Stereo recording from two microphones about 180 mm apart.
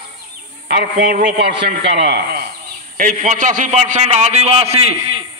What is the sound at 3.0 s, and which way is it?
A man's voice, 50° right (ahead or behind).